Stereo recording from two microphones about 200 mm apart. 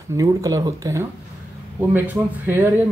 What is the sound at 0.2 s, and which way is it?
Speech, 15° right (ahead or behind).